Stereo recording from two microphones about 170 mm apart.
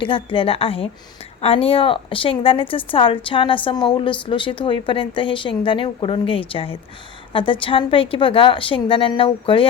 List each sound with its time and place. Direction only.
0.0 s a woman's voice: 30° left (ahead or behind)